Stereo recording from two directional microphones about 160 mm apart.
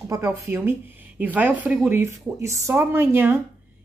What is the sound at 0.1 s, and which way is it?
A woman's voice, 15° right (ahead or behind).